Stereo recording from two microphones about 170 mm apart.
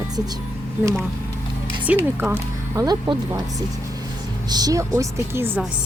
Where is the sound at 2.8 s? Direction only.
25° right (ahead or behind).